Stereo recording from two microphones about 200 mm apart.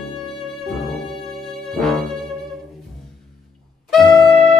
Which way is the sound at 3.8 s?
Centre (ahead or behind).